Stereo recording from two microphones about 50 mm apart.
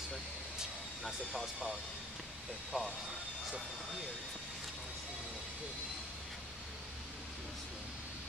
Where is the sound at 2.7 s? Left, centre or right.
Centre.